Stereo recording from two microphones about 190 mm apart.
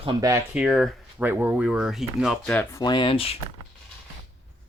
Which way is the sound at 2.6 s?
20° left (ahead or behind).